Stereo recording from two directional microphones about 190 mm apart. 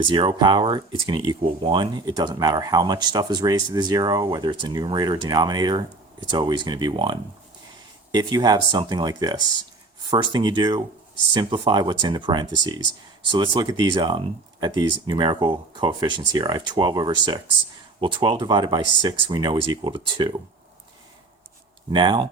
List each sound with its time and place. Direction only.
0.0 s speech: 25° right (ahead or behind)
21.8 s speech: 25° right (ahead or behind)